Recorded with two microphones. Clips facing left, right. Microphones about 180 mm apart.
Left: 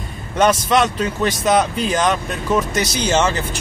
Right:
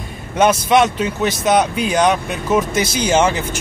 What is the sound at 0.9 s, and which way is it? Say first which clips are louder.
Speech: right 1 dB; 5° right (ahead or behind).